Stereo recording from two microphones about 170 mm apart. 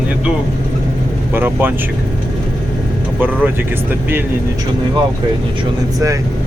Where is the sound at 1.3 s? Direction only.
10° right (ahead or behind).